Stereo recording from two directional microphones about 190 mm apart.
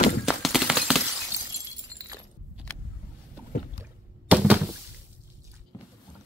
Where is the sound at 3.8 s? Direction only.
10° right (ahead or behind).